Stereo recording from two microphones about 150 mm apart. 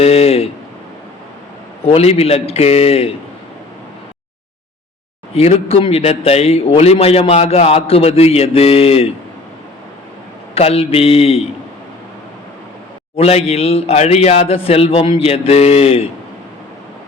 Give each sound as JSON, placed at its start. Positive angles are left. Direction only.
{"t": 0.0, "sound": "a sound", "side_deg": 45}
{"t": 1.8, "sound": "a man's voice", "side_deg": 45}
{"t": 5.3, "sound": "a man's voice", "side_deg": 40}
{"t": 10.5, "sound": "a man's voice", "side_deg": 40}
{"t": 13.1, "sound": "a man's voice", "side_deg": 45}